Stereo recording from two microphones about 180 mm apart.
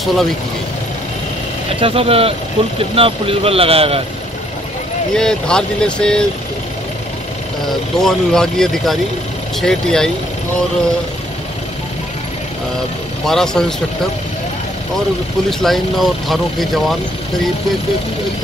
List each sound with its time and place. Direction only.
0.0 s speech: centre (ahead or behind)
1.8 s speech: 30° right (ahead or behind)
5.1 s speech: 5° left (ahead or behind)
8.0 s speech: 5° left (ahead or behind)
13.2 s speech: centre (ahead or behind)
15.6 s speech: centre (ahead or behind)